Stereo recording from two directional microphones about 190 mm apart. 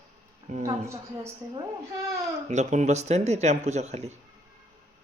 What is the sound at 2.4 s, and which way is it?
Speech, 40° right (ahead or behind).